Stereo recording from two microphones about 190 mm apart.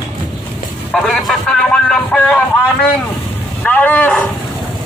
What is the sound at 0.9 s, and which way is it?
Speech, centre (ahead or behind).